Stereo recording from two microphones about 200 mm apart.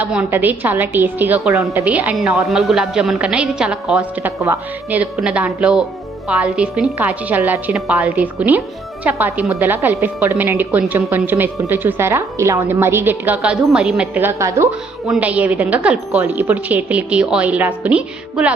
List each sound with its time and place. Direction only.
0.0 s a woman's voice: 10° right (ahead or behind)